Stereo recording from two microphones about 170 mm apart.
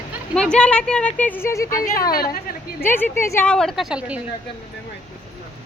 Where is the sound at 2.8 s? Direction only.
10° left (ahead or behind); by 4.2 s 5° right (ahead or behind).